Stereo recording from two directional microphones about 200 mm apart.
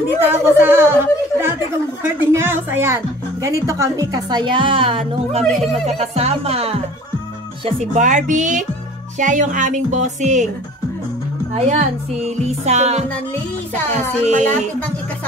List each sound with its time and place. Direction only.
0.2 s a woman's voice: 10° right (ahead or behind); by 5.4 s 25° right (ahead or behind)
5.4 s speech: centre (ahead or behind)
5.9 s speech: 30° right (ahead or behind)
11.5 s speech: 35° right (ahead or behind)